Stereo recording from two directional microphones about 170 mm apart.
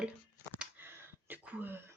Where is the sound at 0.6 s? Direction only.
10° right (ahead or behind).